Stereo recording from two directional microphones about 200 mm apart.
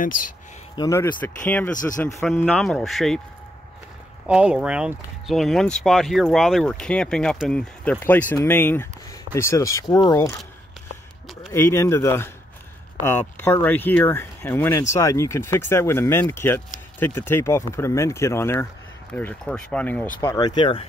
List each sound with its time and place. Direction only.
0.7 s speech: 15° left (ahead or behind)
4.3 s speech: 5° right (ahead or behind); by 10.3 s 15° left (ahead or behind)
11.5 s speech: 15° left (ahead or behind)
20.2 s speech: 20° left (ahead or behind)